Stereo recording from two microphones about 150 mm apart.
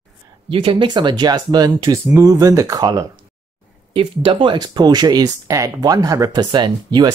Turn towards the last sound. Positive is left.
turn(degrees=-30)  # may be behind; listen again after turning